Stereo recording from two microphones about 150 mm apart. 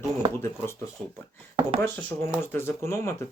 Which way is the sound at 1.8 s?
15° left (ahead or behind).